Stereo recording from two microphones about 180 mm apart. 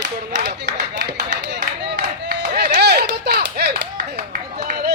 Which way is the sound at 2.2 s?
75° right (ahead or behind).